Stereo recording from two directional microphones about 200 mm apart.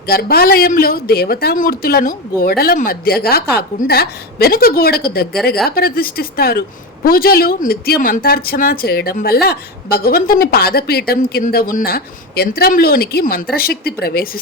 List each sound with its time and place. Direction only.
0.1 s a woman's voice: 50° left (ahead or behind)